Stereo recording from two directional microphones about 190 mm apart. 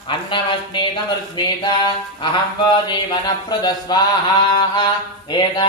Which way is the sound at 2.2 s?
25° left (ahead or behind).